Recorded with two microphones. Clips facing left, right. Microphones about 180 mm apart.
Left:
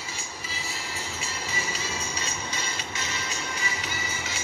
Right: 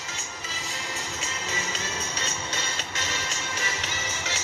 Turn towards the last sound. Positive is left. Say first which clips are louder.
# right 1 dB
turn(degrees=-70)  # may be behind; listen again after turning